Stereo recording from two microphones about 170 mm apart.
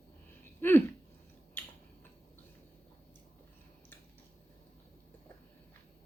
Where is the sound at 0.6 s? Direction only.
15° left (ahead or behind).